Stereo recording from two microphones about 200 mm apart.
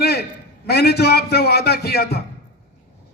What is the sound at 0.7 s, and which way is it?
A man's voice, 55° left (ahead or behind).